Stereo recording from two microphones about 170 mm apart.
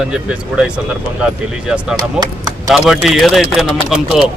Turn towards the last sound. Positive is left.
turn(degrees=0)  # may be behind; listen again after turning